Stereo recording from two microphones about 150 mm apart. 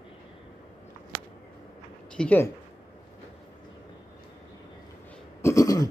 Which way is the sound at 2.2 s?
10° left (ahead or behind).